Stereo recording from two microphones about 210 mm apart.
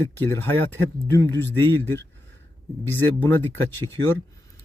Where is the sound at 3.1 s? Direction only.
10° left (ahead or behind).